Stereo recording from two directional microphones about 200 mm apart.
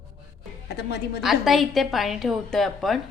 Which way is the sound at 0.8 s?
55° left (ahead or behind).